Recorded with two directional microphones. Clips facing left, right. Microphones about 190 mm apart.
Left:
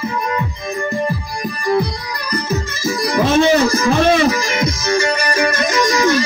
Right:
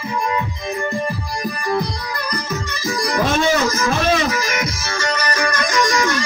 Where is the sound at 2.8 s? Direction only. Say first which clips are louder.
Left 3 dB; 25° left (ahead or behind).